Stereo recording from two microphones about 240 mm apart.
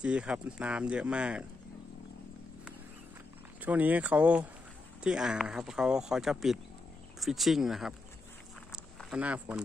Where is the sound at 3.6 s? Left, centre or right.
Centre.